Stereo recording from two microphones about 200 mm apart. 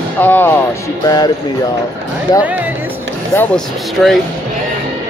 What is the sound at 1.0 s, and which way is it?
Speech, 20° left (ahead or behind).